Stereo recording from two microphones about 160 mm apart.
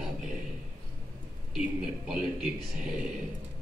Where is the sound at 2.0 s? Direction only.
5° right (ahead or behind).